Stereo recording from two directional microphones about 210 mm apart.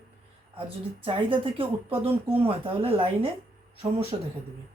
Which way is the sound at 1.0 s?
25° right (ahead or behind).